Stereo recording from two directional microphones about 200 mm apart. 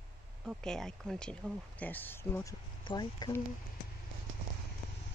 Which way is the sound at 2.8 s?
20° left (ahead or behind).